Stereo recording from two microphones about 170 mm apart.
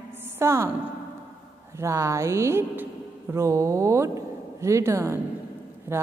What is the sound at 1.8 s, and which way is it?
A woman's voice, 15° right (ahead or behind).